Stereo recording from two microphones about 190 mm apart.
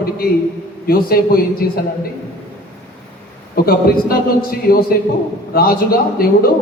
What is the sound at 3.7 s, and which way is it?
Speech, 50° left (ahead or behind).